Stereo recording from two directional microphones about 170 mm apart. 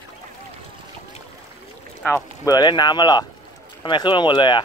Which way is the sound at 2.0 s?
10° left (ahead or behind).